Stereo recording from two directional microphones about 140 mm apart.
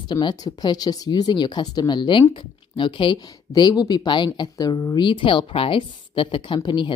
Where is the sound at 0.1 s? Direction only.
30° left (ahead or behind).